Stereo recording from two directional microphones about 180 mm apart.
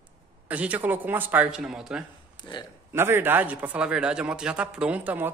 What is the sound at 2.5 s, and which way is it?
Speech, 25° left (ahead or behind).